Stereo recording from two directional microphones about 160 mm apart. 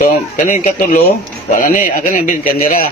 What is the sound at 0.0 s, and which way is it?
Speech, 55° left (ahead or behind).